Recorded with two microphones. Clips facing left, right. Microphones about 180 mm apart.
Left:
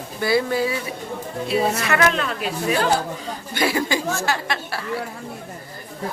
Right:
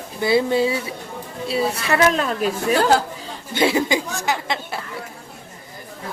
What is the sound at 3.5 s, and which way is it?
Speech, 25° right (ahead or behind).